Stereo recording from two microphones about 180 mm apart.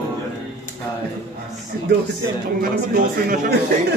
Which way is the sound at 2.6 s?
50° right (ahead or behind).